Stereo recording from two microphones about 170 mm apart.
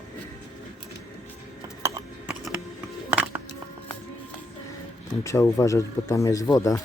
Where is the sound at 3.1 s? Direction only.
10° right (ahead or behind).